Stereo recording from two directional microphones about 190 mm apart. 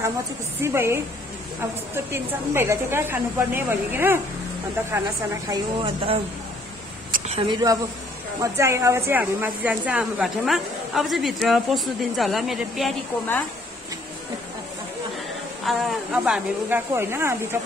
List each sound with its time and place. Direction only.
0.6 s a woman's voice: 15° right (ahead or behind)
2.1 s a woman's voice: 15° right (ahead or behind)
7.2 s a woman's voice: 25° right (ahead or behind); by 12.9 s centre (ahead or behind)
15.6 s a woman's voice: centre (ahead or behind)